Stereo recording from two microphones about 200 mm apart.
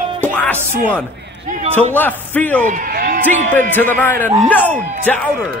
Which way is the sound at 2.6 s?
45° right (ahead or behind).